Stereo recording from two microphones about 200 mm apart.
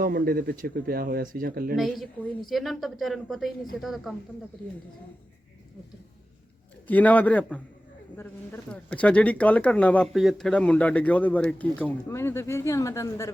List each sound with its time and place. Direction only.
0.0 s speech: 45° right (ahead or behind)
1.7 s a woman's voice: centre (ahead or behind)
6.8 s speech: 10° left (ahead or behind)
8.7 s speech: 5° left (ahead or behind)